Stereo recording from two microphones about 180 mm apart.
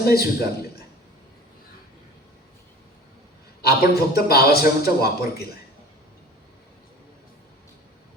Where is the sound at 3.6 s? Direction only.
60° left (ahead or behind).